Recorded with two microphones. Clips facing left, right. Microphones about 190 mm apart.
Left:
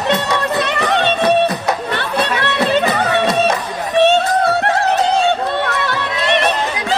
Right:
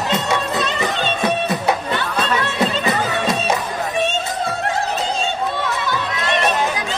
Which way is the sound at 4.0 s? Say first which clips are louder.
Left 11 dB; 65° left (ahead or behind).